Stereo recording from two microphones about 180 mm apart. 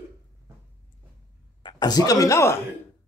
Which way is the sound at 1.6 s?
25° left (ahead or behind).